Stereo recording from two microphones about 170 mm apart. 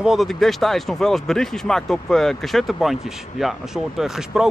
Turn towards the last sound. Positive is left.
turn(degrees=-5)  # may be behind; listen again after turning